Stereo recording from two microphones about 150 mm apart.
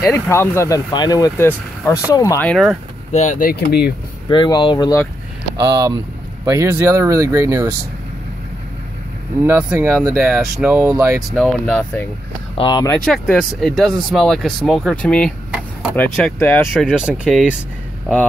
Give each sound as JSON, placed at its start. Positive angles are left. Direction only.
{"t": 0.0, "sound": "speech", "side_deg": 15}
{"t": 2.4, "sound": "speech", "side_deg": 0}
{"t": 3.1, "sound": "speech", "side_deg": 50}
{"t": 4.3, "sound": "speech", "side_deg": 30}
{"t": 5.6, "sound": "speech", "side_deg": -25}
{"t": 9.4, "sound": "speech", "side_deg": -10}
{"t": 10.9, "sound": "speech", "side_deg": -20}
{"t": 11.6, "sound": "speech", "side_deg": 15}
{"t": 12.5, "sound": "speech", "side_deg": 30}
{"t": 12.9, "sound": "speech", "side_deg": 5}
{"t": 16.3, "sound": "speech", "side_deg": 10}
{"t": 16.6, "sound": "speech", "side_deg": -5}